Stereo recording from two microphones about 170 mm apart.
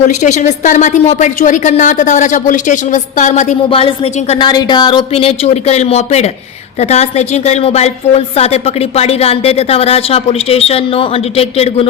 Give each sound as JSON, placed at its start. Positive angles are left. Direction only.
{"t": 0.1, "sound": "a woman's voice", "side_deg": 45}
{"t": 3.7, "sound": "a woman's voice", "side_deg": 35}